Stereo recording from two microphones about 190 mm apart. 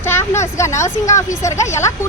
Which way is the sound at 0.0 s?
10° left (ahead or behind).